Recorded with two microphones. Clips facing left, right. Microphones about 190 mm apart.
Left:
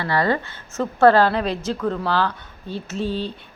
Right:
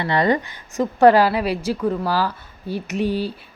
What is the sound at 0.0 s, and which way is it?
Speech, 20° right (ahead or behind).